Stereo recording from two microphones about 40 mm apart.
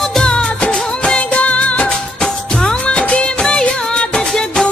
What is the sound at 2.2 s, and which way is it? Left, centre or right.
Music, left.